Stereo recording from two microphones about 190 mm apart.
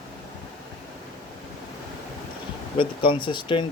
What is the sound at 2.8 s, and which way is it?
Speech, 25° left (ahead or behind).